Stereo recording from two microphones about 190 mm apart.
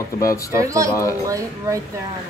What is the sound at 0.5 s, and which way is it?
Speech, 15° right (ahead or behind).